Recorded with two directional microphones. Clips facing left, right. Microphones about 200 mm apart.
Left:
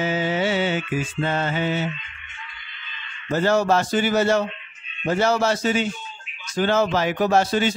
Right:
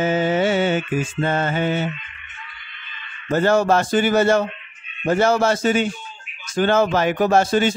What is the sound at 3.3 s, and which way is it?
Music, 50° right (ahead or behind).